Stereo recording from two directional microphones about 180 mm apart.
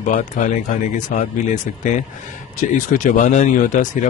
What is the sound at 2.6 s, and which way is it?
Speech, 45° left (ahead or behind).